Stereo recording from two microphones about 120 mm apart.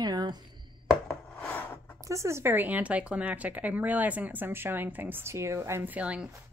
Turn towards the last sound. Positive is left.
turn(degrees=-10)  # may be behind; listen again after turning